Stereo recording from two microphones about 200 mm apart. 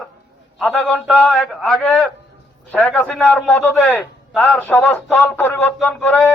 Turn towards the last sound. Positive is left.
turn(degrees=0)  # may be behind; listen again after turning